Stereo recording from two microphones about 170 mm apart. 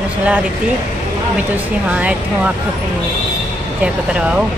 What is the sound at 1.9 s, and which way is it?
Speech, 10° right (ahead or behind).